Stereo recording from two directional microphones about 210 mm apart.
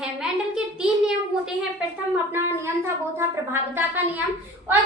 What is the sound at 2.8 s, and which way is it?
Speech, 10° right (ahead or behind).